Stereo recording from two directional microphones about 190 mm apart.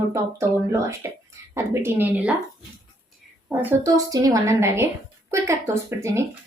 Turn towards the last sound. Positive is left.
turn(degrees=-15)  # may be behind; listen again after turning